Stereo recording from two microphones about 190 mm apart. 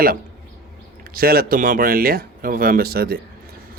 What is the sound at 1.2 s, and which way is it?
Speech, 50° right (ahead or behind).